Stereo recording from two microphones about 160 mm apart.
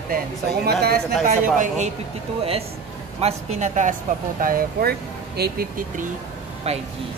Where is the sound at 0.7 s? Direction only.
80° right.